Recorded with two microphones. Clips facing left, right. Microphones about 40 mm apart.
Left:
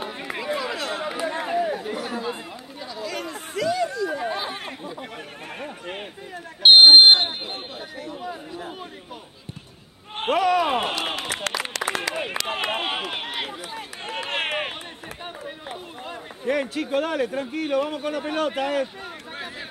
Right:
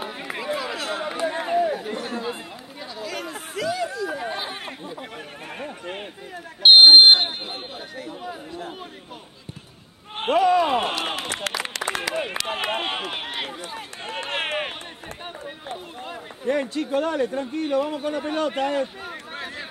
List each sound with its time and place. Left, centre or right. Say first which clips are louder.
0.0 s run: even; centre
3.0 s chatter: left 1 dB; centre
5.6 s smoke detector: right 1 dB; centre
8.0 s chatter: left 1 dB; centre
10.1 s a sound: right 2 dB; centre
12.4 s run: even; centre
16.4 s a man's voice: right 1 dB; centre